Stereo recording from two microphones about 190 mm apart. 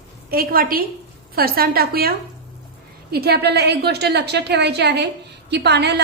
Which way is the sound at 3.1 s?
55° right (ahead or behind).